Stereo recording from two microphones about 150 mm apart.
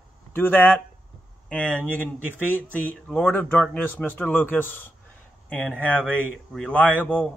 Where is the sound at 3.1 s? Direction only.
10° left (ahead or behind).